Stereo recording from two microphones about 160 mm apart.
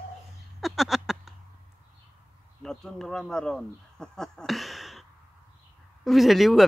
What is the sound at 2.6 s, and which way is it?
Speech, 5° left (ahead or behind).